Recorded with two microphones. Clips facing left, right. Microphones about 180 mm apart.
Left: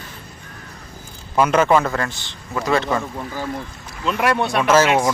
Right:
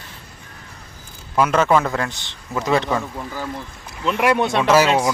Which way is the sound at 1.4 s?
Centre (ahead or behind).